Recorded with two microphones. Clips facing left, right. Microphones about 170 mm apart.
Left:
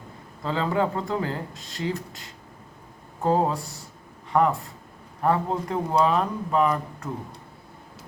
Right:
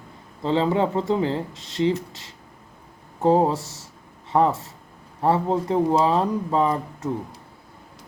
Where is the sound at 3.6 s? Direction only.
85° right.